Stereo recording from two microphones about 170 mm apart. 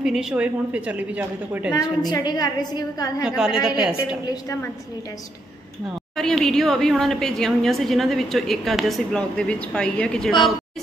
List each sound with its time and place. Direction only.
0.0 s a woman's voice: 5° right (ahead or behind)
1.7 s a woman's voice: 20° left (ahead or behind)
3.3 s a woman's voice: 5° right (ahead or behind)
6.1 s a woman's voice: centre (ahead or behind)